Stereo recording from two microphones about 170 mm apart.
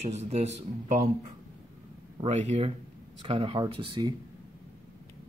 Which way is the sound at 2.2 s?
45° right (ahead or behind).